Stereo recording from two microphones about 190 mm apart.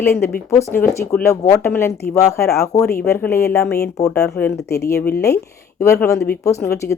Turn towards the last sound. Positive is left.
turn(degrees=15)  # may be behind; listen again after turning